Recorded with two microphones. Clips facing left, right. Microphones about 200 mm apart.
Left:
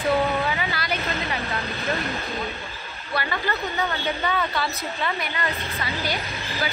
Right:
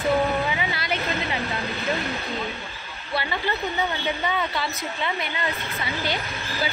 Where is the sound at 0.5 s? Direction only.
15° right (ahead or behind).